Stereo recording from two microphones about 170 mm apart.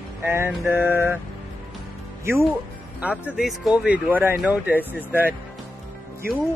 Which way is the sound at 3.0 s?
5° right (ahead or behind).